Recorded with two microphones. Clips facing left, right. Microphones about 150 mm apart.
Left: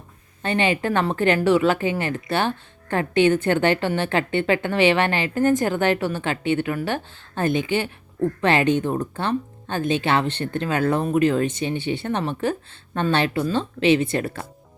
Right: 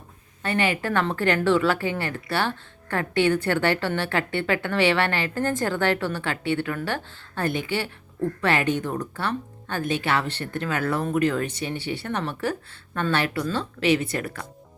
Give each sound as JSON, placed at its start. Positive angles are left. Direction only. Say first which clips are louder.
{"t": 0.4, "sound": "a woman's voice", "louder": "left 3 dB", "side_deg": 20}